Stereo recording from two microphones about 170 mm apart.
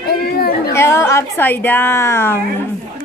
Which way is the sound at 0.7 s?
15° left (ahead or behind).